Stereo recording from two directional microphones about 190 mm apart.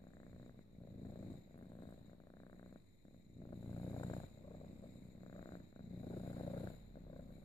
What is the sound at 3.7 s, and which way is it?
Snoring, 20° left (ahead or behind).